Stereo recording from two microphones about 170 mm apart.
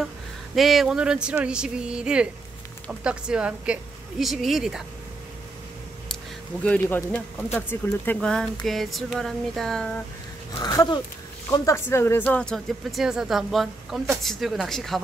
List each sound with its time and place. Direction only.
0.6 s speech: centre (ahead or behind)
6.6 s a man's voice: 10° left (ahead or behind)
10.6 s speech: 20° left (ahead or behind); by 15.0 s centre (ahead or behind)